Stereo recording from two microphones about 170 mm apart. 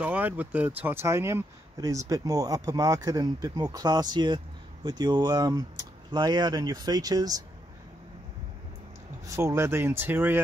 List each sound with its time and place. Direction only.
0.0 s speech: 10° right (ahead or behind)
9.3 s speech: 15° right (ahead or behind)